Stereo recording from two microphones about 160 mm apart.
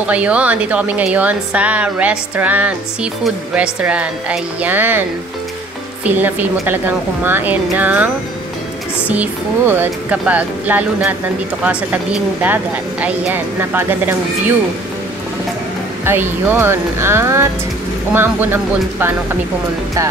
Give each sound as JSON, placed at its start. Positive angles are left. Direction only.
{"t": 0.0, "sound": "speech", "side_deg": -10}
{"t": 6.0, "sound": "speech", "side_deg": -10}
{"t": 16.1, "sound": "speech", "side_deg": -15}